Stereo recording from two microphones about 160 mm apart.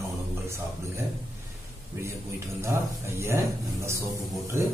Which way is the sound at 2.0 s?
15° right (ahead or behind).